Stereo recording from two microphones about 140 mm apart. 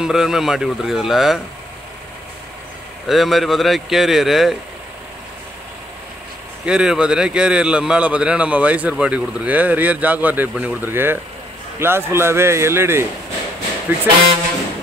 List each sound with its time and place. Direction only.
0.0 s speech: 5° right (ahead or behind)
3.1 s speech: centre (ahead or behind)
6.6 s a man's voice: 5° right (ahead or behind)